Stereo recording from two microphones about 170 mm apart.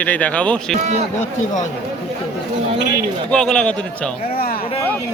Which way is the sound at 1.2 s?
45° left (ahead or behind).